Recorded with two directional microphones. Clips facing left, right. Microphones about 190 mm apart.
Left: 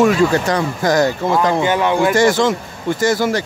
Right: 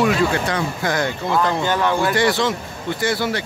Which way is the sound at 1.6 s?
15° left (ahead or behind).